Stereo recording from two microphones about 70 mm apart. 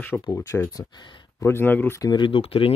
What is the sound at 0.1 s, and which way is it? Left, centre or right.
Speech, left.